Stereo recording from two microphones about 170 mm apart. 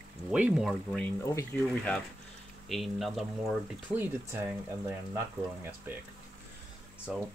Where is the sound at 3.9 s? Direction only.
15° right (ahead or behind).